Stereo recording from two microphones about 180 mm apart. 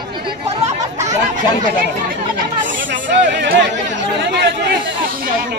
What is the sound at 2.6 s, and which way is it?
Chatter, 90° right.